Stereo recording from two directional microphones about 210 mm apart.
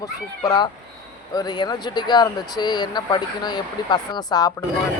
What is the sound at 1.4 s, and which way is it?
Speech, 20° left (ahead or behind).